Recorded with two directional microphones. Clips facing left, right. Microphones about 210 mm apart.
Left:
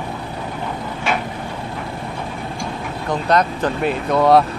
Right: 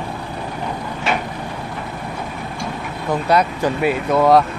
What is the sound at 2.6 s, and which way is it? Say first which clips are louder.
Speech: even; 5° right (ahead or behind).